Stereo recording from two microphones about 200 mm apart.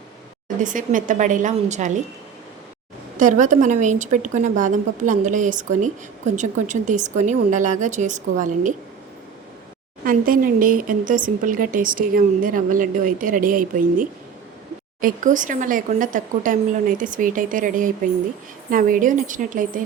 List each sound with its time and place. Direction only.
0.4 s a woman's voice: 40° right (ahead or behind)
3.2 s a woman's voice: 40° right (ahead or behind)
10.0 s a woman's voice: 45° right (ahead or behind)